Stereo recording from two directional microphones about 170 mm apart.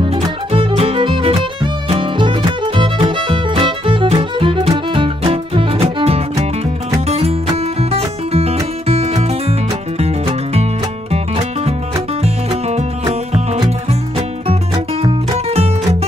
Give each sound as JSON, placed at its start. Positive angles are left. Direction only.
{"t": 0.0, "sound": "music", "side_deg": -35}
{"t": 10.5, "sound": "music", "side_deg": -35}
{"t": 12.2, "sound": "music", "side_deg": -40}
{"t": 15.0, "sound": "music", "side_deg": -35}